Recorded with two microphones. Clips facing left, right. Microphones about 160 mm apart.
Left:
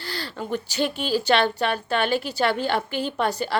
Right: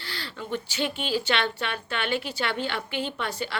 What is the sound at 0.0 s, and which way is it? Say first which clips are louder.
A woman's voice: left 5 dB; 40° left (ahead or behind).